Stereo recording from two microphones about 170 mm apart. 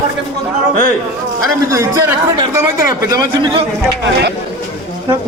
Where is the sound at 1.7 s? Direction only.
15° right (ahead or behind).